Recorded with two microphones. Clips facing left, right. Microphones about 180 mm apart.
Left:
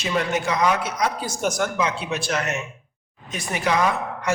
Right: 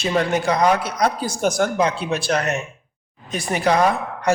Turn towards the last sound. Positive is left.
turn(degrees=-35)  # may be behind; listen again after turning